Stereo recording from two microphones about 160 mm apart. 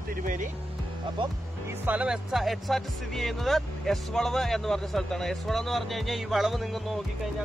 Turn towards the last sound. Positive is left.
turn(degrees=0)  # may be behind; listen again after turning